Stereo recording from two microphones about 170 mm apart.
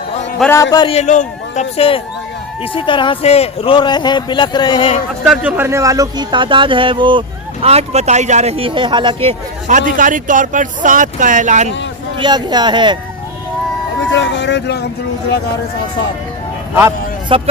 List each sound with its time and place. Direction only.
0.5 s speech: 20° left (ahead or behind)
0.9 s a man's voice: 40° left (ahead or behind)
5.2 s speech: 5° right (ahead or behind); by 9.3 s 30° right (ahead or behind)
9.6 s speech: 50° right (ahead or behind)
12.2 s speech: 25° right (ahead or behind)
14.2 s speech: 90° left
17.2 s speech: 30° right (ahead or behind)